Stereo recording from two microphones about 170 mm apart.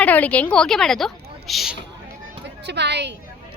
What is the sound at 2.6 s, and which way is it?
Speech, 85° right.